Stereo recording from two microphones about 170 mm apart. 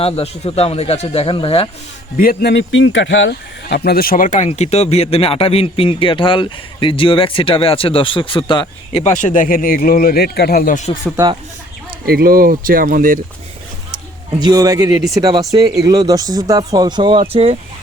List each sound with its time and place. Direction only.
0.0 s a man's voice: 35° left (ahead or behind)
2.1 s a man's voice: 70° left (ahead or behind); by 10.9 s 50° left (ahead or behind)
12.0 s speech: 60° right (ahead or behind)
14.3 s speech: 25° right (ahead or behind)